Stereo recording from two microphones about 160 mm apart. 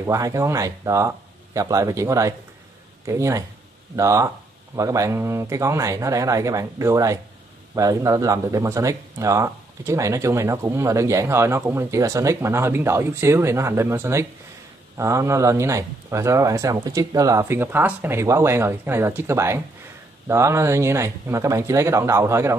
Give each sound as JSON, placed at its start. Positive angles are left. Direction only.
{"t": 0.0, "sound": "speech", "side_deg": -20}